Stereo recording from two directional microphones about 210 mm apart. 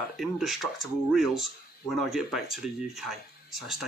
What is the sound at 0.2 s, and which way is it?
Speech, centre (ahead or behind).